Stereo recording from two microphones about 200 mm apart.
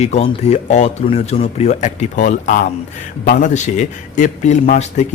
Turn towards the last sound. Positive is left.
turn(degrees=35)  # may be behind; listen again after turning